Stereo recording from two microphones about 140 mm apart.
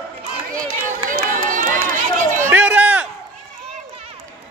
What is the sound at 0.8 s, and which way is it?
Run, 85° right.